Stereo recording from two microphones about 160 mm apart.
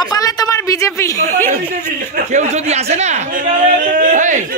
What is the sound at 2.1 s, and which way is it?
Speech, 50° right (ahead or behind).